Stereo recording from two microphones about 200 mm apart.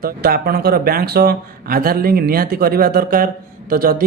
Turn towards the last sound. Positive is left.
turn(degrees=-45)  # may be behind; listen again after turning